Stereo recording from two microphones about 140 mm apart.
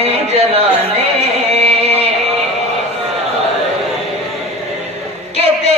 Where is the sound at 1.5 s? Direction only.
50° right (ahead or behind).